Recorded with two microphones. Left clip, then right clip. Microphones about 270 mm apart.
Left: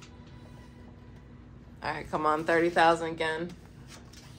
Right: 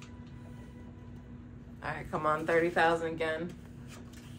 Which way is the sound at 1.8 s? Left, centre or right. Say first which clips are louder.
Left 3 dB; left.